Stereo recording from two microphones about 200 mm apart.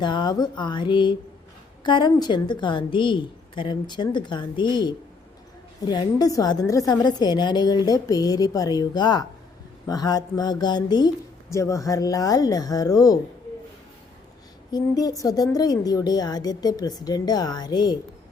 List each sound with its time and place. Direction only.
0.0 s a woman's voice: 20° left (ahead or behind)
14.7 s a woman's voice: 20° left (ahead or behind)